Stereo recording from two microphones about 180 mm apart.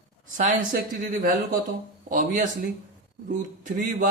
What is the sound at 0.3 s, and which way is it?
Speech, 45° right (ahead or behind).